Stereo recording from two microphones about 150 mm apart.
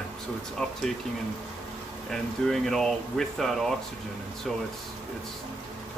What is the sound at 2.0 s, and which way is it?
Speech, 5° left (ahead or behind).